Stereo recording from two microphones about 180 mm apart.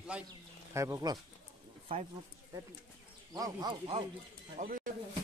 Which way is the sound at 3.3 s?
20° right (ahead or behind).